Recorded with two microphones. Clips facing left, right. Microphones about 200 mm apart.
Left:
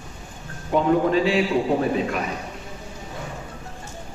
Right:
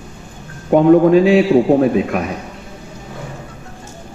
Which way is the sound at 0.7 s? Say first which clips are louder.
Right 10 dB; 55° right (ahead or behind).